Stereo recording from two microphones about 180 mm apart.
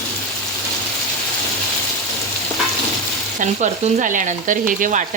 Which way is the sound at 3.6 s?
45° right (ahead or behind).